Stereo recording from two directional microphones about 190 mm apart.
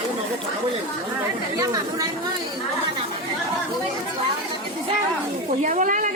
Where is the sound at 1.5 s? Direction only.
15° right (ahead or behind).